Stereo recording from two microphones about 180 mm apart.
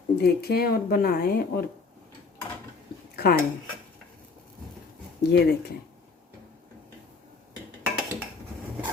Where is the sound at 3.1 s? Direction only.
55° left (ahead or behind).